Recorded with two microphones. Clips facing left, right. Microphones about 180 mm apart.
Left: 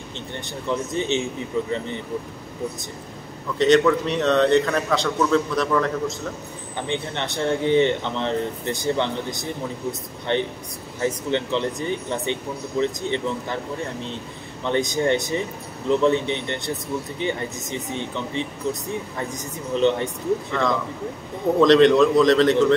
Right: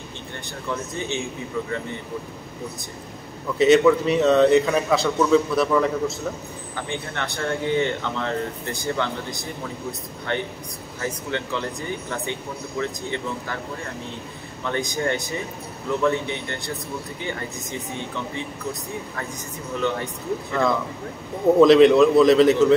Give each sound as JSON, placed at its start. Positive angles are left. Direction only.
{"t": 0.7, "sound": "speech", "side_deg": 20}
{"t": 3.5, "sound": "a man's voice", "side_deg": -5}
{"t": 6.9, "sound": "speech", "side_deg": 20}
{"t": 14.6, "sound": "speech", "side_deg": 20}
{"t": 21.5, "sound": "a man's voice", "side_deg": -5}